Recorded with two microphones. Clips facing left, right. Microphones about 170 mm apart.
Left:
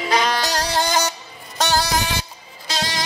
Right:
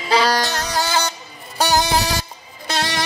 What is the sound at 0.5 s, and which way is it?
Music, 30° left (ahead or behind).